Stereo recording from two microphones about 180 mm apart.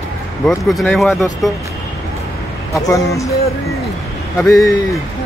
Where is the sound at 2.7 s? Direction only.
15° left (ahead or behind).